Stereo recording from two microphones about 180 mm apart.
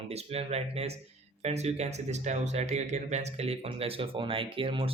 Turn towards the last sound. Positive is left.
turn(degrees=-30)  # may be behind; listen again after turning